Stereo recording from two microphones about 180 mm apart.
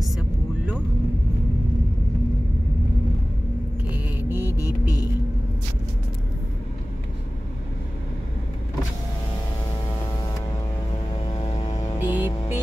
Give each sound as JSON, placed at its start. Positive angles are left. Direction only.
{"t": 0.0, "sound": "vehicle", "side_deg": -5}
{"t": 3.9, "sound": "vehicle", "side_deg": -10}
{"t": 11.2, "sound": "music", "side_deg": 25}
{"t": 12.0, "sound": "music", "side_deg": -10}